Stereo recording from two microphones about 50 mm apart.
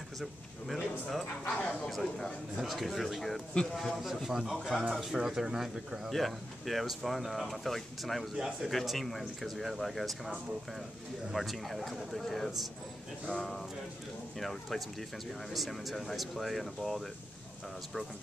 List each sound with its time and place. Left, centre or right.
0.2 s a man's voice: centre
1.2 s speech: left
1.9 s speech: centre
4.6 s speech: centre
5.1 s speech: centre
6.0 s speech: centre
11.3 s speech: centre